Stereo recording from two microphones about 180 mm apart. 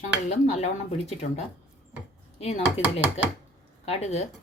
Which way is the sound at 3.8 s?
35° left (ahead or behind).